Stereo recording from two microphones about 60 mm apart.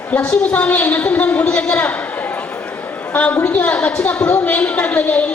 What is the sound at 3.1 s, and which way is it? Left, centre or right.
A woman's voice, left.